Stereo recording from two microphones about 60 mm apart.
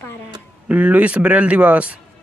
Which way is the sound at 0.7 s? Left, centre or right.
Right.